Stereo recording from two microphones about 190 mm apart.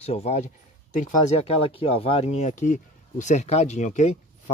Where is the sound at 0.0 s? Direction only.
35° left (ahead or behind).